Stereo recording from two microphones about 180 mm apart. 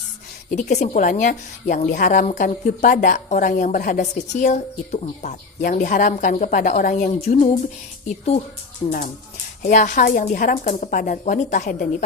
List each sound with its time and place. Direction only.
0.5 s a woman's voice: 40° left (ahead or behind)
8.8 s speech: 30° left (ahead or behind)
9.6 s a woman's voice: 45° left (ahead or behind)